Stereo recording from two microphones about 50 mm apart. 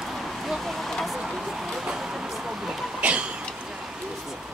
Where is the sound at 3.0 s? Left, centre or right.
Right.